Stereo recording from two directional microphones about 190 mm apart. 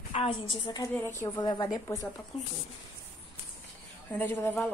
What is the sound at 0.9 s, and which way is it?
A woman's voice, 15° left (ahead or behind).